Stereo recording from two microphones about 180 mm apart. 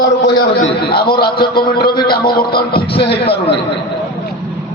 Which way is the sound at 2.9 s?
65° left (ahead or behind).